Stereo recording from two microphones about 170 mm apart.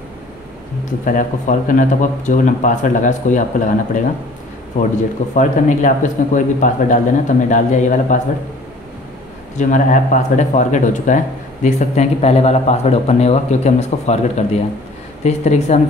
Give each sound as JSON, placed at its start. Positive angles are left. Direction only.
{"t": 1.0, "sound": "speech", "side_deg": 50}
{"t": 9.6, "sound": "a man's voice", "side_deg": 45}